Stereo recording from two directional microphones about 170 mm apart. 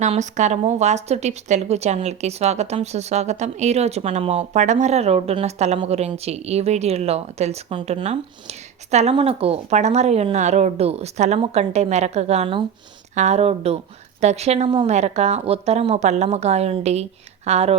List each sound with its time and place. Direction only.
0.0 s a woman's voice: 45° right (ahead or behind)